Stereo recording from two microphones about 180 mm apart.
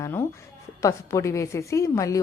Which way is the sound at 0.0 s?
15° left (ahead or behind).